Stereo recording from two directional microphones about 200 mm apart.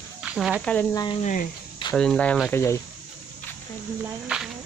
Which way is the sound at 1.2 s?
40° left (ahead or behind).